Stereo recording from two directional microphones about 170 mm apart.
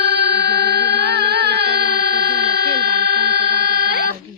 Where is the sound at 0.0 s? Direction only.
75° right (ahead or behind).